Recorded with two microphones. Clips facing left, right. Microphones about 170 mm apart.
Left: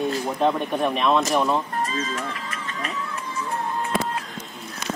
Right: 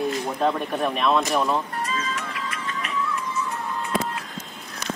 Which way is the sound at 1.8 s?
40° left (ahead or behind).